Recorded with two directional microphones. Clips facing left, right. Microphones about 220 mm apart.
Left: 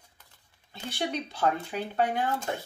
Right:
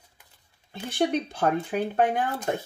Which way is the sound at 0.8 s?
50° right (ahead or behind).